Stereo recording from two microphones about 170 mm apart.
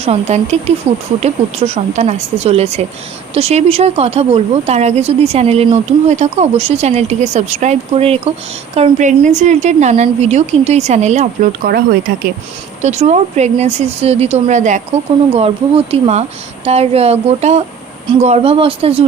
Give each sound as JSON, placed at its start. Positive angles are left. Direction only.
{"t": 0.0, "sound": "speech", "side_deg": -40}
{"t": 11.7, "sound": "speech", "side_deg": -75}
{"t": 12.8, "sound": "speech", "side_deg": -40}
{"t": 15.3, "sound": "speech", "side_deg": -35}